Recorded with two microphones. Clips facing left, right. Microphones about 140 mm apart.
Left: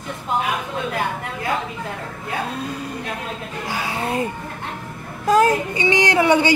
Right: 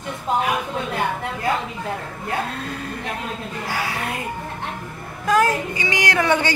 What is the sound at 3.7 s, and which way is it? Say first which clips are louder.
A woman's voice: left 4 dB; 25° left (ahead or behind).